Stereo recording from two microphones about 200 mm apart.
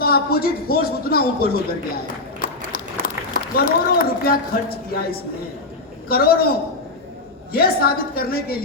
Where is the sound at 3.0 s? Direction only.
45° left (ahead or behind).